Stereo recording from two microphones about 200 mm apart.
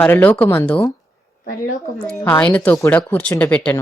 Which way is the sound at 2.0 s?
10° left (ahead or behind).